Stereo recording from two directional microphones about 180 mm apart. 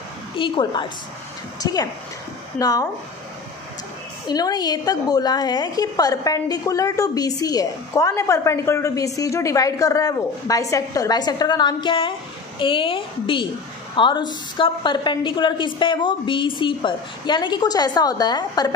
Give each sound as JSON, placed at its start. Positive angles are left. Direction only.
{"t": 0.4, "sound": "a woman's voice", "side_deg": 25}
{"t": 4.3, "sound": "a woman's voice", "side_deg": 20}